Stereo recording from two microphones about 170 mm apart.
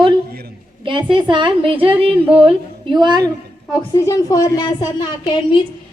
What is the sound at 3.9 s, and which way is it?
A woman's voice, 20° left (ahead or behind).